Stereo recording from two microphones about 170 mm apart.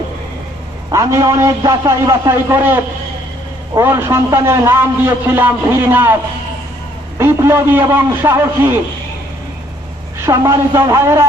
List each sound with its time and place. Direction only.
0.9 s a man's voice: 15° right (ahead or behind)
7.2 s a man's voice: 15° right (ahead or behind)
10.2 s a man's voice: 15° right (ahead or behind)